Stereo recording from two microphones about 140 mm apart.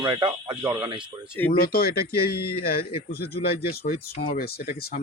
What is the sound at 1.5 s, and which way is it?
Speech, 90° left.